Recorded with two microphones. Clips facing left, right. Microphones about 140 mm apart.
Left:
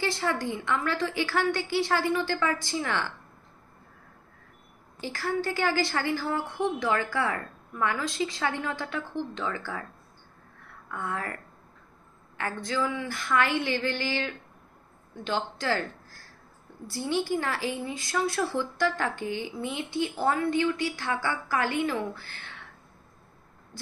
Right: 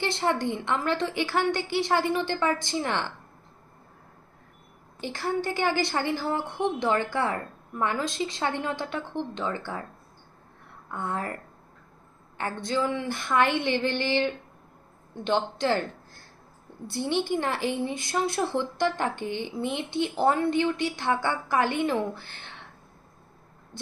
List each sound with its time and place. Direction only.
0.0 s a woman's voice: 20° right (ahead or behind)
4.9 s a woman's voice: 20° right (ahead or behind)
10.9 s a woman's voice: 25° right (ahead or behind)
12.4 s a woman's voice: 25° right (ahead or behind)
16.8 s a woman's voice: 20° right (ahead or behind)